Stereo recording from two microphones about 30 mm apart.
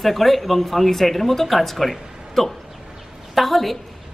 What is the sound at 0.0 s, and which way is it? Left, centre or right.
A woman's voice, centre.